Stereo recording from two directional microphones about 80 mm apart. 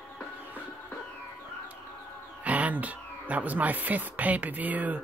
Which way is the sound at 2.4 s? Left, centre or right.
Centre.